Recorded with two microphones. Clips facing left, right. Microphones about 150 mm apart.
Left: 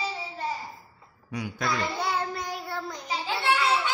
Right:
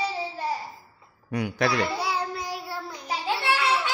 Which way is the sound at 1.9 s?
10° right (ahead or behind).